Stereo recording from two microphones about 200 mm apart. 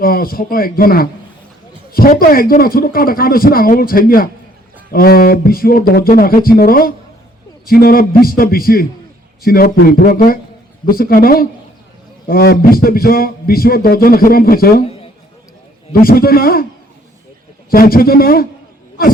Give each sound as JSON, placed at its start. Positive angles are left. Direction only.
{"t": 0.0, "sound": "speech", "side_deg": 45}
{"t": 15.9, "sound": "speech", "side_deg": 50}
{"t": 17.7, "sound": "speech", "side_deg": 45}